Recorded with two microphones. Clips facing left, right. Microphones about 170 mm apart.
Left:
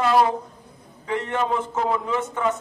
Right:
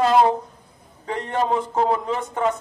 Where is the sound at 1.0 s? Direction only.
35° right (ahead or behind).